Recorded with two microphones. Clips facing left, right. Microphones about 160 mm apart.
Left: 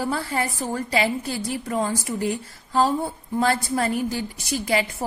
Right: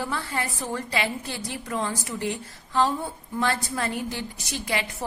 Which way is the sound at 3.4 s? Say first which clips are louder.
Left 4 dB; 30° left (ahead or behind).